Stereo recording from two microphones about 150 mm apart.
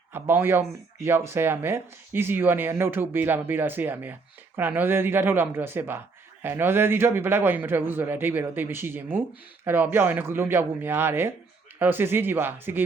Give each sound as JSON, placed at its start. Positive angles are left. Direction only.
{"t": 0.1, "sound": "speech", "side_deg": -15}